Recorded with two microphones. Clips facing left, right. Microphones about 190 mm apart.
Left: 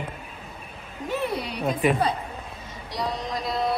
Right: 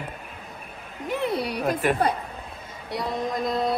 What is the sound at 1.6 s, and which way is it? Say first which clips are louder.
Speech: left 2 dB; centre (ahead or behind).